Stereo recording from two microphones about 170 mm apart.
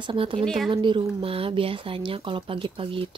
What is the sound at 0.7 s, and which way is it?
Speech, 30° right (ahead or behind).